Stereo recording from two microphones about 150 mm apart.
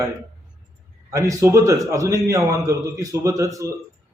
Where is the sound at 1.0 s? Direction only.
20° right (ahead or behind).